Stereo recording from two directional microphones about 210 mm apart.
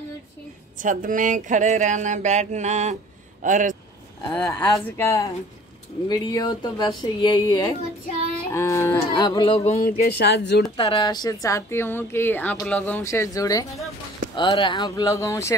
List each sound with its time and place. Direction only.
0.7 s speech: 40° right (ahead or behind)
4.3 s speech: 5° left (ahead or behind); by 9.9 s 35° left (ahead or behind)
10.0 s speech: 50° left (ahead or behind)
10.8 s speech: 25° left (ahead or behind)